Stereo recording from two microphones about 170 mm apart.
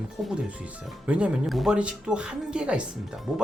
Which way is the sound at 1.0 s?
5° right (ahead or behind).